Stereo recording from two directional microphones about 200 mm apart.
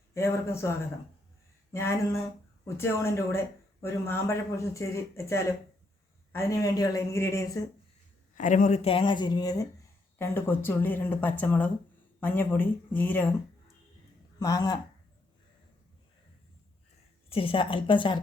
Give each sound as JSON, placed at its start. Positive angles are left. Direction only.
{"t": 0.1, "sound": "speech", "side_deg": 15}
{"t": 1.7, "sound": "speech", "side_deg": 15}
{"t": 8.4, "sound": "speech", "side_deg": 40}
{"t": 14.3, "sound": "speech", "side_deg": 20}
{"t": 17.2, "sound": "speech", "side_deg": 30}